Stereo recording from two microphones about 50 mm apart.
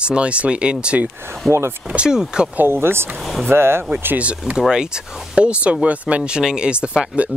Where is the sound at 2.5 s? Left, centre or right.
Right.